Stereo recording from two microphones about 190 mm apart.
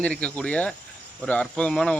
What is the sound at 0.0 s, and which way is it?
Speech, 5° left (ahead or behind).